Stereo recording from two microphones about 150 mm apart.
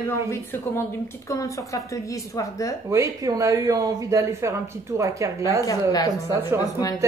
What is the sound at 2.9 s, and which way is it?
Speech, 20° right (ahead or behind).